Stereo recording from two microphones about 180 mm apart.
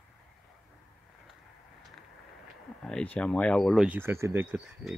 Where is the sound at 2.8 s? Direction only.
5° left (ahead or behind).